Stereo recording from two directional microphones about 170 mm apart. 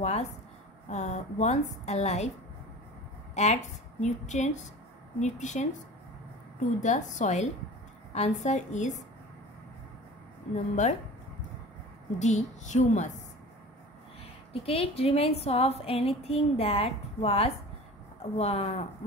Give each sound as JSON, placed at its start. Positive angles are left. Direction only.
{"t": 0.0, "sound": "a woman's voice", "side_deg": 40}
{"t": 3.4, "sound": "a woman's voice", "side_deg": 40}
{"t": 6.8, "sound": "a woman's voice", "side_deg": 45}
{"t": 10.5, "sound": "a woman's voice", "side_deg": 45}
{"t": 12.2, "sound": "a woman's voice", "side_deg": 45}
{"t": 14.5, "sound": "a woman's voice", "side_deg": 35}